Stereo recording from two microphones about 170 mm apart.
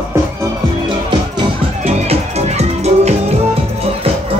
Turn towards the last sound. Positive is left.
turn(degrees=-40)  # may be behind; listen again after turning